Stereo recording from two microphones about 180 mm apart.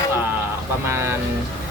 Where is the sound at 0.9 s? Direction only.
15° right (ahead or behind).